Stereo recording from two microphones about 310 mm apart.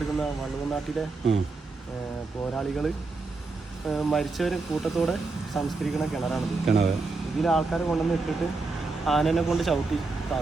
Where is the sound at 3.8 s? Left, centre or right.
Centre.